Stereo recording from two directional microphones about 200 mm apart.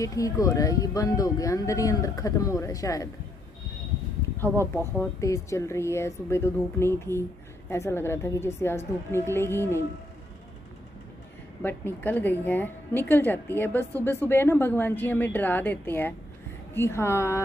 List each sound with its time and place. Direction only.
0.0 s a woman's voice: 15° left (ahead or behind)
4.9 s a woman's voice: 15° left (ahead or behind)
11.6 s a woman's voice: 10° left (ahead or behind)